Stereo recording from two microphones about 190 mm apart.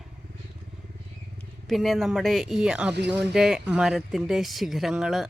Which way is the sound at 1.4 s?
Centre (ahead or behind).